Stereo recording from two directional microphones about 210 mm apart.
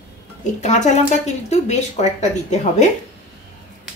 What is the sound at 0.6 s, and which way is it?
Speech, 35° left (ahead or behind).